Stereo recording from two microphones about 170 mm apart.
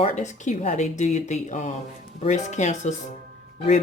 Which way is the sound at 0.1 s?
45° left (ahead or behind).